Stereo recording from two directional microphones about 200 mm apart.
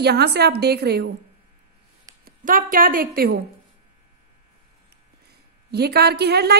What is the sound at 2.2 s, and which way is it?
A woman's voice, 45° right (ahead or behind).